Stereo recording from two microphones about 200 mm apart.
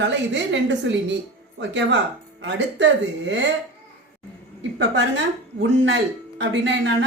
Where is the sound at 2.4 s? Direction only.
60° right (ahead or behind).